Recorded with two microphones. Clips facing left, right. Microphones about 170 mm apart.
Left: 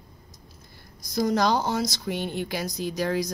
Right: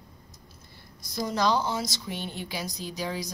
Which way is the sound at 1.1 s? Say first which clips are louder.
Left 3 dB; 50° left (ahead or behind).